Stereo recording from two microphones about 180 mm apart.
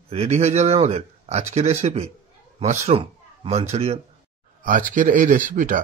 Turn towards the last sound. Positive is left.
turn(degrees=-45)  # may be behind; listen again after turning